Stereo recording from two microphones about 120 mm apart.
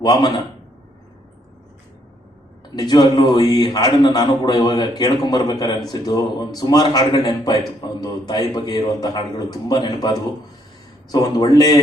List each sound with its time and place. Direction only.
0.0 s a man's voice: 35° left (ahead or behind)
2.6 s a man's voice: 35° left (ahead or behind)